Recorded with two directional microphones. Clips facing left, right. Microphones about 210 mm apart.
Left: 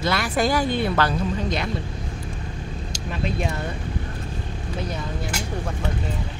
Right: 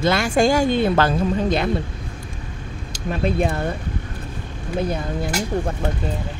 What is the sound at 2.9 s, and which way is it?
Speech, 55° right (ahead or behind).